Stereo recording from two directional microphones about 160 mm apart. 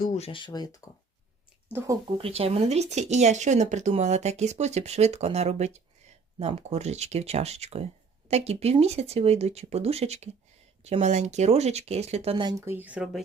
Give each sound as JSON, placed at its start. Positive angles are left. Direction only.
{"t": 0.2, "sound": "speech", "side_deg": 30}
{"t": 2.1, "sound": "speech", "side_deg": -35}
{"t": 12.6, "sound": "speech", "side_deg": -10}